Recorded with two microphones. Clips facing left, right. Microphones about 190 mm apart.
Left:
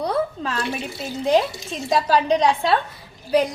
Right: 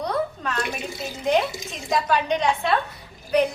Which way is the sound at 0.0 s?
30° left (ahead or behind).